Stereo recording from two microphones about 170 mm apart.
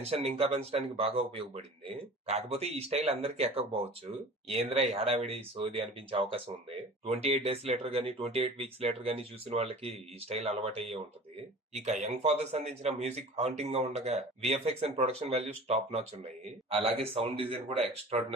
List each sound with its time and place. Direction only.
0.0 s speech: 35° right (ahead or behind)